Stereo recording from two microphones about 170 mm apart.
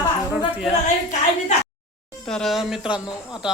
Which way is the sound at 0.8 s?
45° left (ahead or behind).